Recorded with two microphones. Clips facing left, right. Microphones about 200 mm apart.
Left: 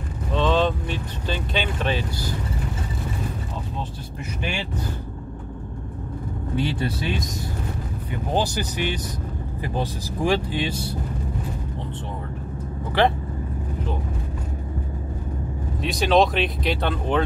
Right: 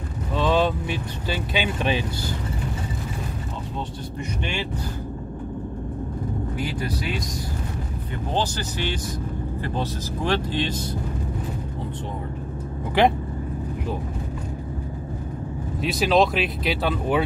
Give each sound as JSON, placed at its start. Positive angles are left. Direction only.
{"t": 0.3, "sound": "vehicle", "side_deg": -10}
{"t": 6.5, "sound": "speech", "side_deg": 25}
{"t": 8.3, "sound": "speech", "side_deg": 15}
{"t": 13.0, "sound": "speech", "side_deg": -15}
{"t": 15.8, "sound": "speech", "side_deg": 0}